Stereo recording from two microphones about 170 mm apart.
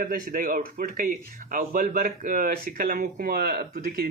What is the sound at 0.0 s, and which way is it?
Speech, 55° right (ahead or behind).